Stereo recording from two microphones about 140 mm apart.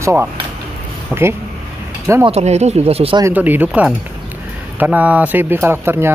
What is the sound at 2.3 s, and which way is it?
Speech, 50° right (ahead or behind).